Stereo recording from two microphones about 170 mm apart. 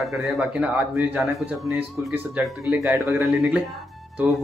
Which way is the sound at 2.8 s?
15° right (ahead or behind).